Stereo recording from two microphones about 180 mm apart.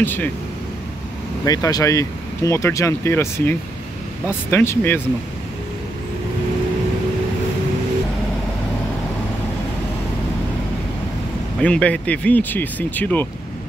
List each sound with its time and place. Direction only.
0.0 s speech: 10° left (ahead or behind)
1.4 s speech: 20° left (ahead or behind)
11.6 s speech: 5° left (ahead or behind)